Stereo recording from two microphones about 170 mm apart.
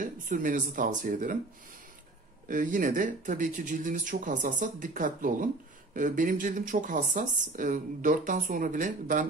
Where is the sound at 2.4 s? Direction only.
50° right (ahead or behind).